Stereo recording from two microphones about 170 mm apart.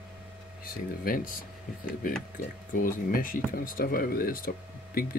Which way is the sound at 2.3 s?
55° left (ahead or behind).